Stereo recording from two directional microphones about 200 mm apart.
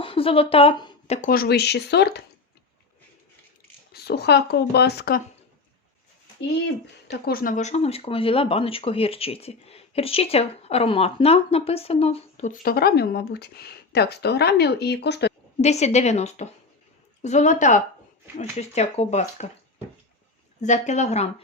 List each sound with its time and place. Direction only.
0.0 s a woman's voice: 25° left (ahead or behind)
1.3 s speech: 50° left (ahead or behind)
3.9 s speech: 55° left (ahead or behind)
7.1 s speech: 45° left (ahead or behind)
15.6 s speech: 35° left (ahead or behind)
20.6 s speech: 35° left (ahead or behind)